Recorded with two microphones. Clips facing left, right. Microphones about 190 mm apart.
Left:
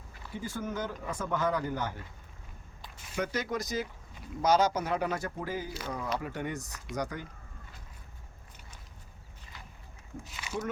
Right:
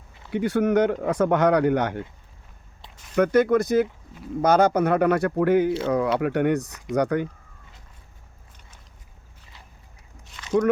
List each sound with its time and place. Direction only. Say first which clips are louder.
0.3 s speech: right 15 dB; 70° right (ahead or behind)
3.2 s speech: right 14 dB; 55° right (ahead or behind)
10.2 s a sound: even; 5° left (ahead or behind)